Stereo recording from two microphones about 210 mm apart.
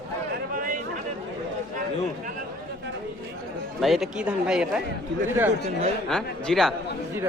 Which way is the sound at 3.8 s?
Centre (ahead or behind).